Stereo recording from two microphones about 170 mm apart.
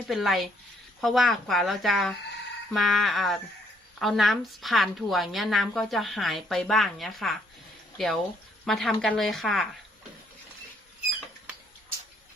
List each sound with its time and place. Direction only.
0.1 s a woman's voice: centre (ahead or behind)